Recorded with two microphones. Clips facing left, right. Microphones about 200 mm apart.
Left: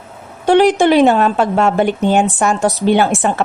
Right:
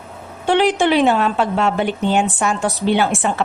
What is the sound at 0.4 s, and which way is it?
A woman's voice, 40° left (ahead or behind).